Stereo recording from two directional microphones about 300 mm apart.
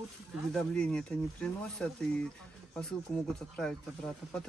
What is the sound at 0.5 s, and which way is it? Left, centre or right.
Speech, centre.